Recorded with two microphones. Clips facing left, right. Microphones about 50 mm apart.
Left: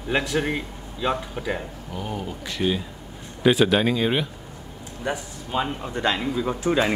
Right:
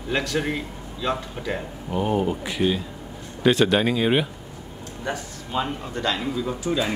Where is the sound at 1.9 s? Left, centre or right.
Right.